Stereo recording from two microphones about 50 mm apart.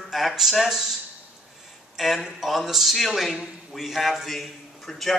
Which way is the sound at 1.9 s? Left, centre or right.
Centre.